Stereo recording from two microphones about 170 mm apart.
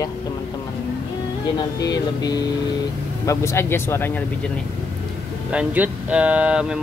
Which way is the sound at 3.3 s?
15° left (ahead or behind).